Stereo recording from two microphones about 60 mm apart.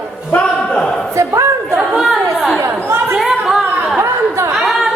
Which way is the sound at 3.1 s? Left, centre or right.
Centre.